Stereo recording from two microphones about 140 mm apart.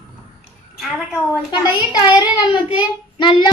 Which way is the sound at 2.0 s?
30° left (ahead or behind).